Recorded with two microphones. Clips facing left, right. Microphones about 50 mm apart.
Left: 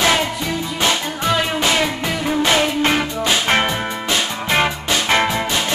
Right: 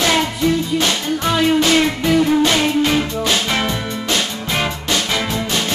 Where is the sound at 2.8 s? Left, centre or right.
Left.